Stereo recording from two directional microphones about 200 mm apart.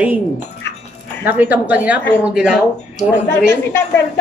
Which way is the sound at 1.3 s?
10° right (ahead or behind).